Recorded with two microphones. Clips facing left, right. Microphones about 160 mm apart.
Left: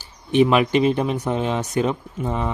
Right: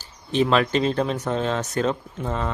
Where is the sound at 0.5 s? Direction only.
10° left (ahead or behind).